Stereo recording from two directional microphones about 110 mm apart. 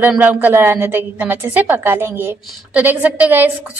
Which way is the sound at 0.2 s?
15° right (ahead or behind).